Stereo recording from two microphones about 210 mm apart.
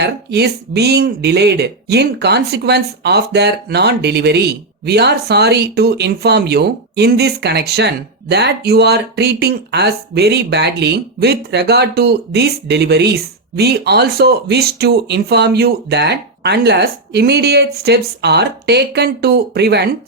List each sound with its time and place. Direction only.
0.0 s speech: 50° right (ahead or behind)